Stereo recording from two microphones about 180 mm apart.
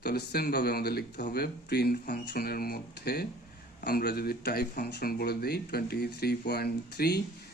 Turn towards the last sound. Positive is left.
turn(degrees=65)  # may be behind; listen again after turning